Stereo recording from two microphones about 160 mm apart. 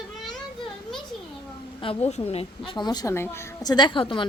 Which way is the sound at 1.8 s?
40° left (ahead or behind).